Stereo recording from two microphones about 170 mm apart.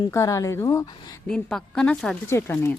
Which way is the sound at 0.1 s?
15° left (ahead or behind).